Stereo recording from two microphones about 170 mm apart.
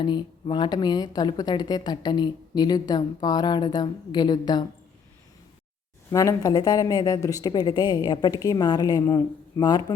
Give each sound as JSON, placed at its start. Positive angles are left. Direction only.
{"t": 0.0, "sound": "a woman's voice", "side_deg": 25}
{"t": 6.1, "sound": "a woman's voice", "side_deg": 20}